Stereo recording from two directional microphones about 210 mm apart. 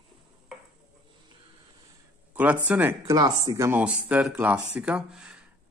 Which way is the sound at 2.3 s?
10° right (ahead or behind).